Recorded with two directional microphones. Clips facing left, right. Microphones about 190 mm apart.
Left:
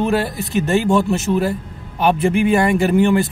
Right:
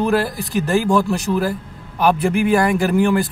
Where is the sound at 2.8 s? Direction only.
25° left (ahead or behind).